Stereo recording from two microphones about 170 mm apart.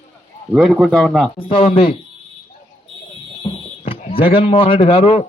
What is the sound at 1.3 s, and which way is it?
Speech, 30° left (ahead or behind).